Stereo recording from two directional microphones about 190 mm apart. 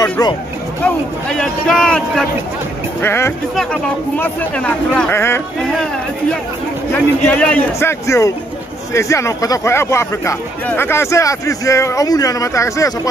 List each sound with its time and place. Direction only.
0.0 s speech: 20° left (ahead or behind)
0.8 s a man's voice: 5° left (ahead or behind)
5.6 s a man's voice: 5° left (ahead or behind)
6.9 s speech: 10° left (ahead or behind)